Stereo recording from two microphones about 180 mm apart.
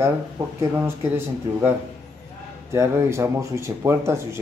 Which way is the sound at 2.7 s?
15° right (ahead or behind).